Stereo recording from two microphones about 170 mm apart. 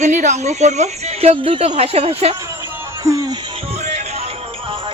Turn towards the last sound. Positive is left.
turn(degrees=-20)  # may be behind; listen again after turning